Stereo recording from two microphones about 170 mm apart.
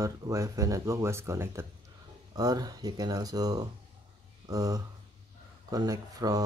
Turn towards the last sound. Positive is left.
turn(degrees=-20)  # may be behind; listen again after turning